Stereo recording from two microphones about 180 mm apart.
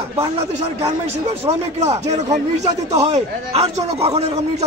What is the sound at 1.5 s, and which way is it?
Speech, 35° right (ahead or behind).